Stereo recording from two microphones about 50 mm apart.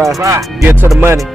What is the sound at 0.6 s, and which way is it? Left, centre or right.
Speech, right.